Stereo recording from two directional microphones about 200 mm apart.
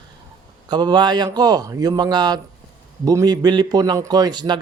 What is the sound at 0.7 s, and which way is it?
A man's voice, 20° right (ahead or behind).